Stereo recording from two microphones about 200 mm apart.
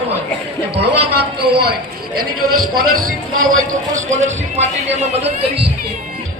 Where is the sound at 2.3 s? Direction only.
90° right.